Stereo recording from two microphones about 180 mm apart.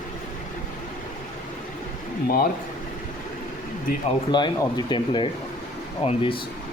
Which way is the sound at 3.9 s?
55° left (ahead or behind).